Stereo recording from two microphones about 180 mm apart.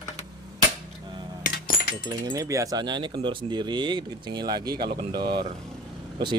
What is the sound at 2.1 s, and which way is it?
Speech, 20° right (ahead or behind).